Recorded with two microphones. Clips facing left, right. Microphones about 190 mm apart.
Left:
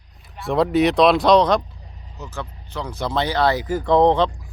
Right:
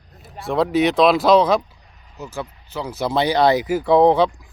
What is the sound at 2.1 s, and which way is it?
Speech, 10° right (ahead or behind).